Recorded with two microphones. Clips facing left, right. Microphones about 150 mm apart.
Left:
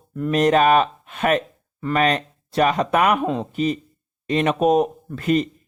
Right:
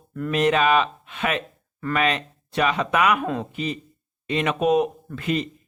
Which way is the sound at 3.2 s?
25° left (ahead or behind).